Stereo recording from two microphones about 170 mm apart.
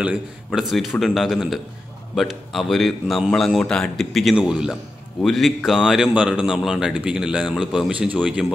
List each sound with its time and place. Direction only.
0.0 s speech: 5° right (ahead or behind)